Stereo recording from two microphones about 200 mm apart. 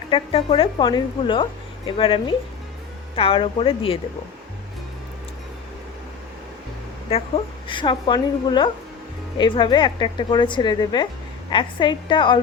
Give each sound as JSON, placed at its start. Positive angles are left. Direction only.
{"t": 0.1, "sound": "a woman's voice", "side_deg": 25}
{"t": 7.1, "sound": "a woman's voice", "side_deg": 25}